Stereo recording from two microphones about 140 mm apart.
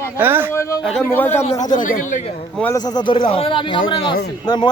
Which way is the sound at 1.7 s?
70° left (ahead or behind).